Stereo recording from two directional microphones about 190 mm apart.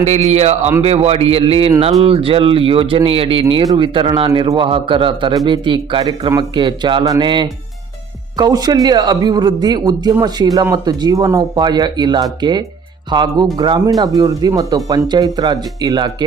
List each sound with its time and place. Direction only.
0.0 s a man's voice: 35° right (ahead or behind); by 16.1 s 20° right (ahead or behind)